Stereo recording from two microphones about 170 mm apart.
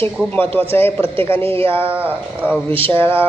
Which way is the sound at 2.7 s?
30° right (ahead or behind).